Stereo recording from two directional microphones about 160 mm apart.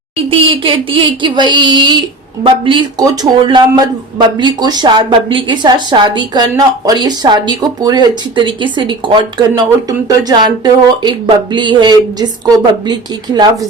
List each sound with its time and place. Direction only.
0.3 s a woman's voice: 35° right (ahead or behind)